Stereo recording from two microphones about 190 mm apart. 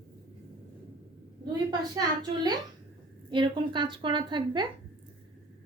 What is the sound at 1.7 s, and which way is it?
A woman's voice, 20° right (ahead or behind).